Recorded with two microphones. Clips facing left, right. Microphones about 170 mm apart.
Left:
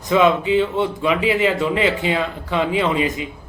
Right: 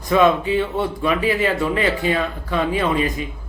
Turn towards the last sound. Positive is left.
turn(degrees=20)  # may be behind; listen again after turning